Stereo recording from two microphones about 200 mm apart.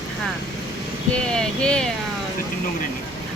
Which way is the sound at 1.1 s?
5° left (ahead or behind).